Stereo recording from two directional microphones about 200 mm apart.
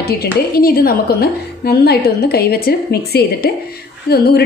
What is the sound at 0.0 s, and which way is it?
A woman's voice, 50° left (ahead or behind).